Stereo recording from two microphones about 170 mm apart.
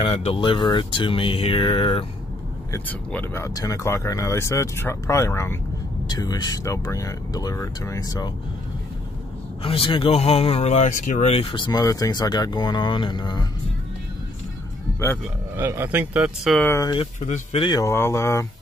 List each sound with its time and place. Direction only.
0.0 s speech: 35° left (ahead or behind)
2.7 s speech: 10° left (ahead or behind)
9.6 s speech: 30° left (ahead or behind)
15.5 s speech: 15° right (ahead or behind)
16.6 s speech: 20° left (ahead or behind)
17.0 s speech: 35° left (ahead or behind)
17.6 s speech: 20° left (ahead or behind)